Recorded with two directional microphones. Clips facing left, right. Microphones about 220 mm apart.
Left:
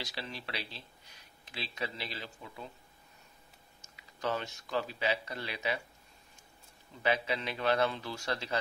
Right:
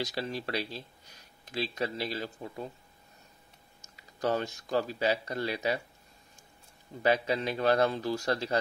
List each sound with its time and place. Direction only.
0.0 s speech: 45° right (ahead or behind)
4.2 s a man's voice: 40° right (ahead or behind)
7.0 s a man's voice: 40° right (ahead or behind)